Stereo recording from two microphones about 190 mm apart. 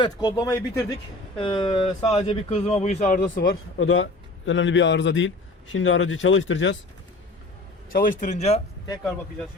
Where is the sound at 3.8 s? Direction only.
90° left.